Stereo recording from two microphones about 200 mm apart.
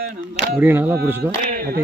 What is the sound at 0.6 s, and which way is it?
Speech, 10° right (ahead or behind).